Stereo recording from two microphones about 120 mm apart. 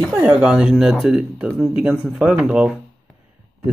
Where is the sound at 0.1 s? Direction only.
10° right (ahead or behind).